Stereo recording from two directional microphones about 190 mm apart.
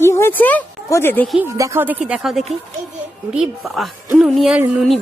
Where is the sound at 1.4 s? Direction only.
15° right (ahead or behind).